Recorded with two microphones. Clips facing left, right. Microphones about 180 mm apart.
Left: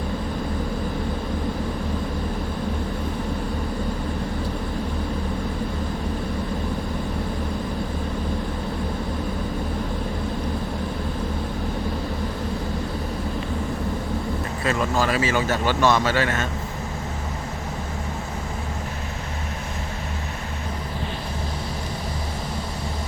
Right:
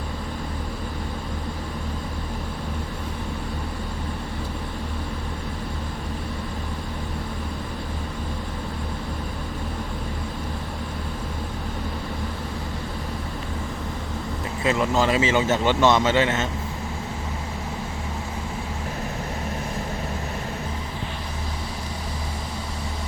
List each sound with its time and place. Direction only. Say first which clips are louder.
14.6 s speech: right 2 dB; 20° right (ahead or behind)